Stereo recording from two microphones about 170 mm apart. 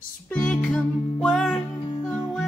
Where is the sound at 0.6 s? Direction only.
10° left (ahead or behind).